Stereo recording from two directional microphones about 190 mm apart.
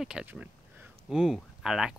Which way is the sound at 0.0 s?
5° right (ahead or behind).